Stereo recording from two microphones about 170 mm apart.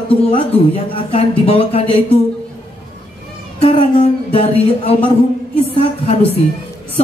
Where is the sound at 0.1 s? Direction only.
35° left (ahead or behind).